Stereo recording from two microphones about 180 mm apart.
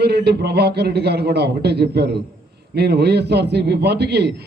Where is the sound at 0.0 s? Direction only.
65° right (ahead or behind).